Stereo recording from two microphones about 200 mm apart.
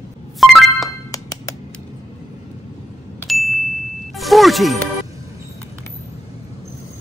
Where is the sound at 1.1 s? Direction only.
15° left (ahead or behind).